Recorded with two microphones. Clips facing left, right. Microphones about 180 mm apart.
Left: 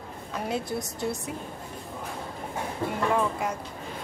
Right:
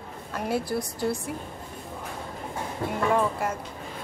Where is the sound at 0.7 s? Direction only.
25° left (ahead or behind).